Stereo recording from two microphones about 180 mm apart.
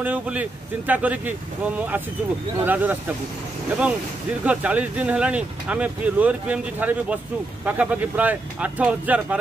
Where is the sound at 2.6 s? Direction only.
10° right (ahead or behind).